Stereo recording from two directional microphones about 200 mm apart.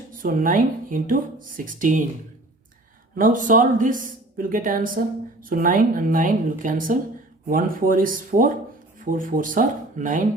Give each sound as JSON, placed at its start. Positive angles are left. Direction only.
{"t": 0.1, "sound": "speech", "side_deg": -45}
{"t": 3.2, "sound": "speech", "side_deg": -40}